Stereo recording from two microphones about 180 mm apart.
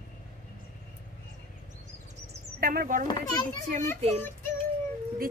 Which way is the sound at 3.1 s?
25° left (ahead or behind).